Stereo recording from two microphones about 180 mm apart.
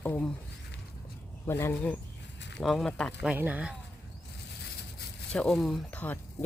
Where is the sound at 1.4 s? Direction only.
15° left (ahead or behind).